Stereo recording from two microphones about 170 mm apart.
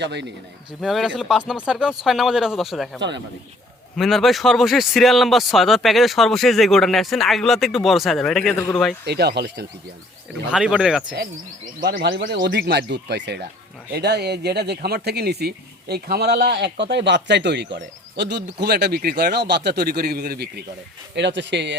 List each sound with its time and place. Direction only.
0.0 s speech: 90° right
0.8 s a man's voice: centre (ahead or behind)
9.0 s speech: 75° right (ahead or behind)
10.5 s a man's voice: 5° right (ahead or behind)
11.8 s speech: 65° right (ahead or behind)
21.2 s speech: 90° right